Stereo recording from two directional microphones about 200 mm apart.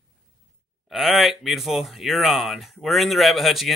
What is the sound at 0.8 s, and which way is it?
Speech, centre (ahead or behind).